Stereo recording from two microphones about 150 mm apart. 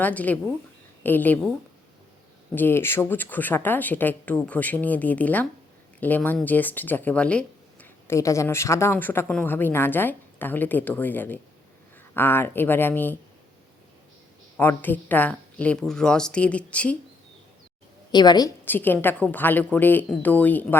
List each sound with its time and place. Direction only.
0.0 s speech: 10° left (ahead or behind)
2.6 s speech: 15° left (ahead or behind)
14.5 s speech: 15° left (ahead or behind)
18.1 s a woman's voice: 30° left (ahead or behind)
18.6 s a woman's voice: 15° left (ahead or behind)